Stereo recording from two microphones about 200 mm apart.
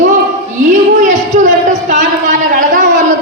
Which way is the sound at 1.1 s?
35° right (ahead or behind).